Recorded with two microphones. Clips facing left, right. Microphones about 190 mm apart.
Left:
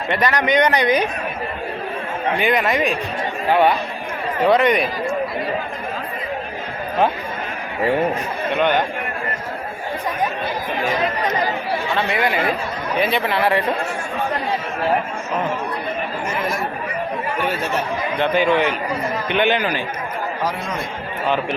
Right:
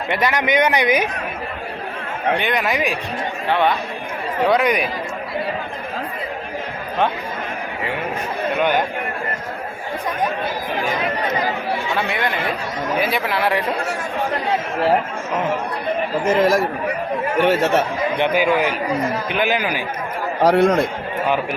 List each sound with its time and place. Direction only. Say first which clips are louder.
0.1 s speech: left 1 dB; 10° right (ahead or behind)
2.4 s speech: left 2 dB; 5° left (ahead or behind)
3.5 s speech: left 3 dB; 10° left (ahead or behind)
8.5 s speech: left 1 dB; 10° right (ahead or behind)
11.9 s speech: left 2 dB; centre (ahead or behind)
16.2 s speech: right 10 dB; 90° right
18.2 s speech: left 1 dB; 5° right (ahead or behind)
20.4 s a man's voice: right 14 dB; 70° right (ahead or behind)